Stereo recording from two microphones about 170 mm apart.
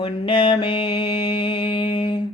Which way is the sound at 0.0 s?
30° left (ahead or behind).